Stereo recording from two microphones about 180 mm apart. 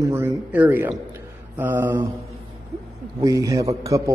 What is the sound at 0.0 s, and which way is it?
A man's voice, 15° right (ahead or behind).